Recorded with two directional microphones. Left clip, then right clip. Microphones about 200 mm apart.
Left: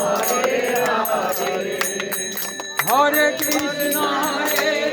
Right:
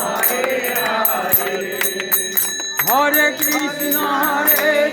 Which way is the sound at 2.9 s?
50° right (ahead or behind).